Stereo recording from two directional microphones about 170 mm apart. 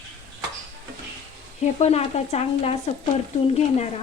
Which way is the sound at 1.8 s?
40° left (ahead or behind).